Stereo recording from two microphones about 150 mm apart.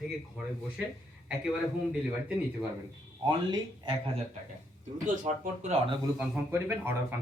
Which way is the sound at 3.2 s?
30° right (ahead or behind).